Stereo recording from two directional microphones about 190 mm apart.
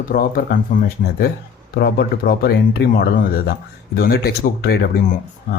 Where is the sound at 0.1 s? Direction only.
50° left (ahead or behind).